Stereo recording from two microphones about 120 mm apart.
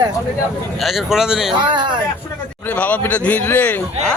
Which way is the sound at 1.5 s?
40° right (ahead or behind).